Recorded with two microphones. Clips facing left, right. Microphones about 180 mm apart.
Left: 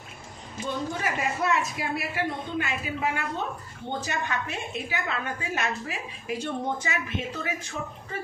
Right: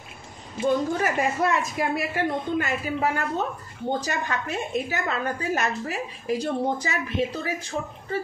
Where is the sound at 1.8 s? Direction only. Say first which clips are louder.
Right 5 dB; 50° right (ahead or behind).